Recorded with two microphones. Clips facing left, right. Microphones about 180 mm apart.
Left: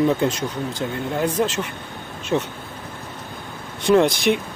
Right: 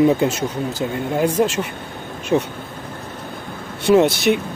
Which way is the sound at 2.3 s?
20° right (ahead or behind).